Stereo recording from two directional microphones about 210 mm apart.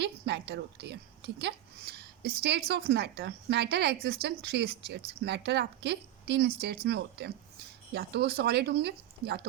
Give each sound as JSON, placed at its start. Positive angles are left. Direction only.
{"t": 0.0, "sound": "a woman's voice", "side_deg": -55}